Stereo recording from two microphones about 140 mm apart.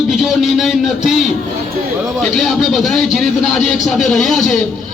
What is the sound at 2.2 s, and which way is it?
A man's voice, centre (ahead or behind).